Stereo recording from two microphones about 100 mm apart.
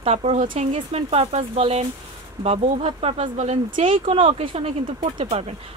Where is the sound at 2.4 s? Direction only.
80° right.